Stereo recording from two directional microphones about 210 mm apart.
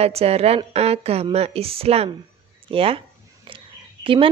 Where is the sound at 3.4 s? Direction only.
25° right (ahead or behind).